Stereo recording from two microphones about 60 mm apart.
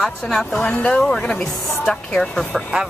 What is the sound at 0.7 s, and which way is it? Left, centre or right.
Speech, left.